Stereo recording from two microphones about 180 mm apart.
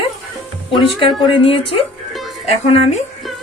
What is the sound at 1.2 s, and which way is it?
Speech, 30° left (ahead or behind).